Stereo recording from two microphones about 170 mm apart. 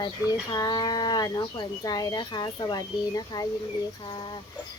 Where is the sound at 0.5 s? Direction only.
20° left (ahead or behind).